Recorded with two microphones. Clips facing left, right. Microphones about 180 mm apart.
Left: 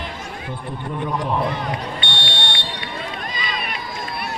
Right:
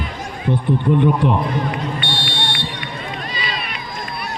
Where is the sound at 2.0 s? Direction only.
25° left (ahead or behind).